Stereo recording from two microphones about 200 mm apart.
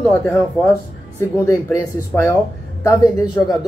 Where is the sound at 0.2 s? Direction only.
10° left (ahead or behind).